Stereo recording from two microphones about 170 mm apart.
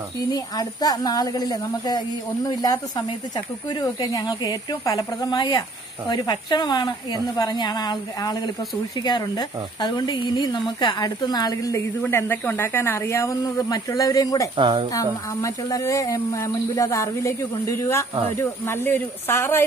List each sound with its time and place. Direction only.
0.3 s a woman's voice: 20° left (ahead or behind)
14.6 s a woman's voice: 30° right (ahead or behind)
14.9 s a woman's voice: 20° left (ahead or behind)